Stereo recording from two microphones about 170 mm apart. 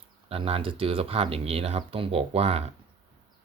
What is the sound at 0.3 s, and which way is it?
Speech, 35° right (ahead or behind).